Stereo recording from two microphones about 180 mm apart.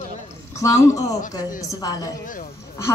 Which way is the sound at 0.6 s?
15° left (ahead or behind).